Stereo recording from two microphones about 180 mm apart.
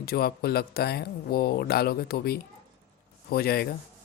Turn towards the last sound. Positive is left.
turn(degrees=60)  # may be behind; listen again after turning